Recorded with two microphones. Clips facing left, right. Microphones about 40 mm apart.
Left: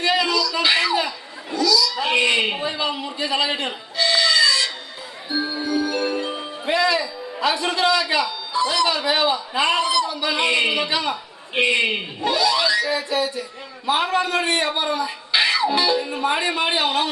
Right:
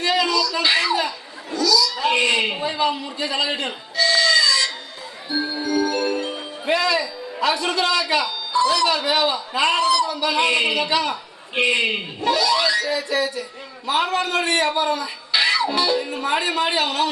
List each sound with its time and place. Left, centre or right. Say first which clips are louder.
0.0 s a sound: even; centre
0.6 s speech: left 1 dB; centre
0.9 s a sound: left 1 dB; centre
2.0 s a man's voice: even; centre
5.7 s music: right 2 dB; centre
8.1 s a man's voice: right 1 dB; centre
15.4 s music: right 1 dB; centre
15.8 s a man's voice: left 1 dB; centre